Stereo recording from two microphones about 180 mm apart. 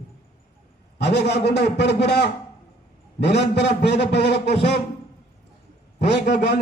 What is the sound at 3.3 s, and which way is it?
A man's voice, 70° left (ahead or behind).